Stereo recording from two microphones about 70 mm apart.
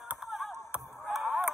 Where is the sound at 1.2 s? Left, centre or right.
Centre.